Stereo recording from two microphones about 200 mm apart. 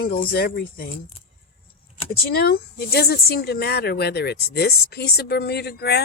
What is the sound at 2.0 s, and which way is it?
Speech, 50° left (ahead or behind).